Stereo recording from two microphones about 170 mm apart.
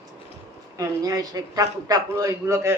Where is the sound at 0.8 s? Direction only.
20° right (ahead or behind).